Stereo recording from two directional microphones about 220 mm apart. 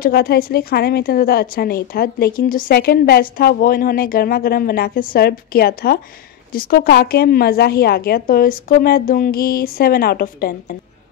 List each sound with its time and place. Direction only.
0.0 s a woman's voice: 45° left (ahead or behind)